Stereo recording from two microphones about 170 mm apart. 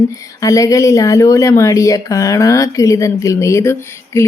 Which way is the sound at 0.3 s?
20° left (ahead or behind).